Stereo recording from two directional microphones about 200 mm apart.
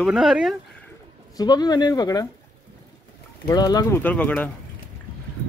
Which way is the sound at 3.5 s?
20° left (ahead or behind).